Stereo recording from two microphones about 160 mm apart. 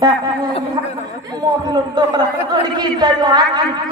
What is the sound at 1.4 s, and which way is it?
A man's voice, 25° right (ahead or behind).